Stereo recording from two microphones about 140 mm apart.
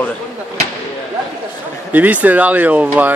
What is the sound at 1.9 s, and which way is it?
Speech, 10° right (ahead or behind).